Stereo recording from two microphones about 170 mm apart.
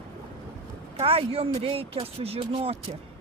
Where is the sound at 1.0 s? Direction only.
35° right (ahead or behind).